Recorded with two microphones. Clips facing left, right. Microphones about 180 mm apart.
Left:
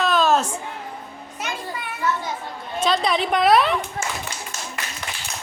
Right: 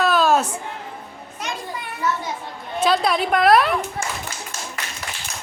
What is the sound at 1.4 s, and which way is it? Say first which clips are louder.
Children playing: even; 5° left (ahead or behind).